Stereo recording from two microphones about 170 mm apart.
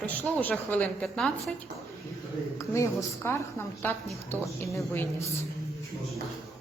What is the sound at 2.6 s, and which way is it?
A woman's voice, 15° left (ahead or behind).